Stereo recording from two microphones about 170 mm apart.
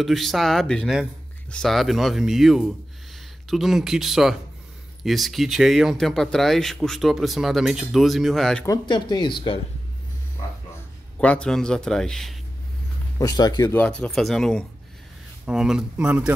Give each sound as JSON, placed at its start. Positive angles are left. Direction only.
{"t": 0.0, "sound": "speech", "side_deg": 0}
{"t": 8.6, "sound": "speech", "side_deg": 25}
{"t": 11.1, "sound": "speech", "side_deg": 5}
{"t": 13.2, "sound": "speech", "side_deg": 20}
{"t": 13.7, "sound": "speech", "side_deg": 10}